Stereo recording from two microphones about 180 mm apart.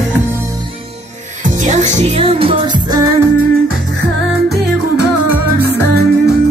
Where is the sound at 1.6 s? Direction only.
40° right (ahead or behind); by 3.1 s 25° right (ahead or behind).